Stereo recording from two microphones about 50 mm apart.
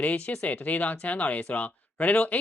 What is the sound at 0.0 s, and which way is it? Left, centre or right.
Speech, left.